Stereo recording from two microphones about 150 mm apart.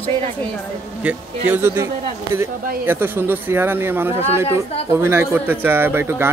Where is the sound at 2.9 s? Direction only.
15° right (ahead or behind).